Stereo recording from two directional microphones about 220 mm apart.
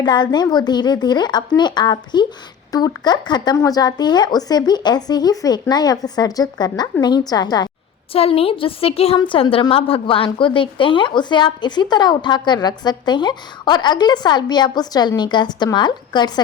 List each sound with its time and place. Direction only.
0.0 s a woman's voice: 20° left (ahead or behind)